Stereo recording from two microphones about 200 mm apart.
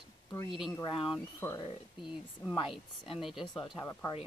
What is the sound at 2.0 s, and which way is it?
Speech, centre (ahead or behind).